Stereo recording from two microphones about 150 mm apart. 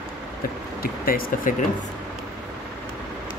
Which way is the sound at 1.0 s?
70° left (ahead or behind).